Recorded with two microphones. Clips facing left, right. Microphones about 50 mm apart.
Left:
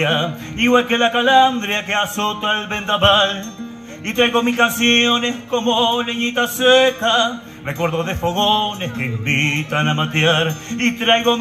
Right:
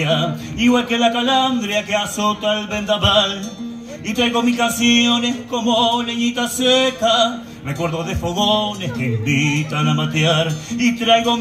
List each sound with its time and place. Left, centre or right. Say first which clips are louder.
0.0 s music: even; left